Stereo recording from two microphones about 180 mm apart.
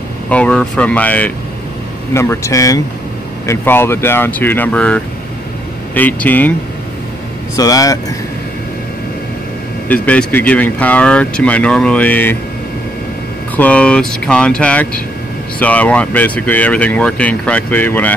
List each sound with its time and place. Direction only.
0.3 s speech: 5° left (ahead or behind)
7.5 s speech: 20° left (ahead or behind)
10.0 s speech: 10° left (ahead or behind)
13.6 s speech: 5° left (ahead or behind)